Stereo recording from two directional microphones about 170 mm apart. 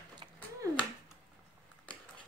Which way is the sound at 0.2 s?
30° right (ahead or behind).